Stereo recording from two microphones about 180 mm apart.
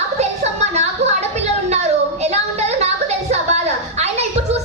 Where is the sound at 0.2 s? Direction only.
40° right (ahead or behind).